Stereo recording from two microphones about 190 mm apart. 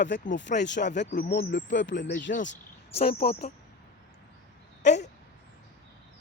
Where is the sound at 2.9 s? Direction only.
30° left (ahead or behind).